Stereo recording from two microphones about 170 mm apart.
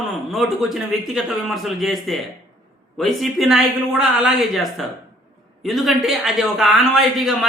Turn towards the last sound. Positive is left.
turn(degrees=0)  # may be behind; listen again after turning